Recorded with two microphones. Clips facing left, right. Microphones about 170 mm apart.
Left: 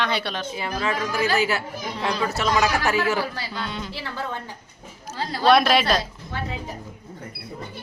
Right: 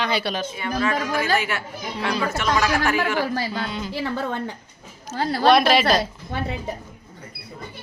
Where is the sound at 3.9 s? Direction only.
60° right (ahead or behind).